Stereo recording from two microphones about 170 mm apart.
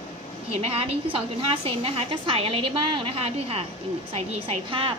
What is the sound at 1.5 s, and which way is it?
A woman's voice, 35° right (ahead or behind).